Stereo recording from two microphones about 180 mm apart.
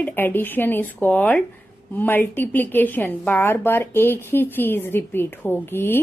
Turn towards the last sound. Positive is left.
turn(degrees=10)  # may be behind; listen again after turning